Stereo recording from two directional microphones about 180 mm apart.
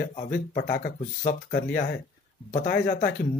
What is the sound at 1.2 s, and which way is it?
Speech, 40° left (ahead or behind).